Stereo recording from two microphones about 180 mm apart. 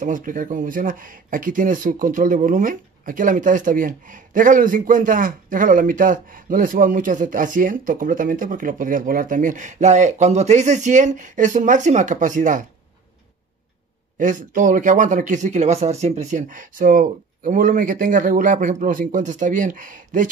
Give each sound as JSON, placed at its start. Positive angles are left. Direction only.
{"t": 0.0, "sound": "speech", "side_deg": -45}
{"t": 14.1, "sound": "speech", "side_deg": -45}